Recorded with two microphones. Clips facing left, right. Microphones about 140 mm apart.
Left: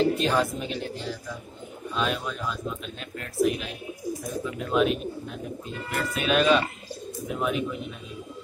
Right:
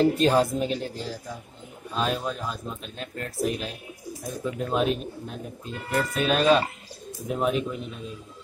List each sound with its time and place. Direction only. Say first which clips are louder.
0.0 s speech: right 3 dB; 40° right (ahead or behind)